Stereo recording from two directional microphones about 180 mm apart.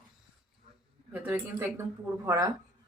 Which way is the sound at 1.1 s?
10° right (ahead or behind).